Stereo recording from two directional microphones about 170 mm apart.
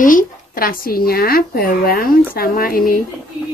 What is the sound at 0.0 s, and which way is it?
Speech, 50° left (ahead or behind).